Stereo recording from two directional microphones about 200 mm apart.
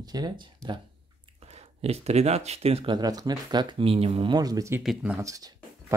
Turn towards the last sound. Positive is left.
turn(degrees=-15)  # may be behind; listen again after turning